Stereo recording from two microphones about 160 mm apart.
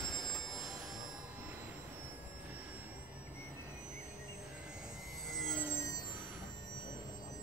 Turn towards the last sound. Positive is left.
turn(degrees=20)  # may be behind; listen again after turning